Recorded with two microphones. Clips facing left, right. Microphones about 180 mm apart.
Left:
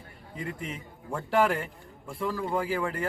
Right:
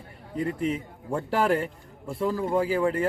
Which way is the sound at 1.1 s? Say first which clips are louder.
Right 1 dB; 35° right (ahead or behind).